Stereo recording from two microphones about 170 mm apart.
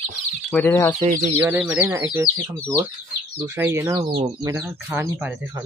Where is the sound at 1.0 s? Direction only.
50° right (ahead or behind).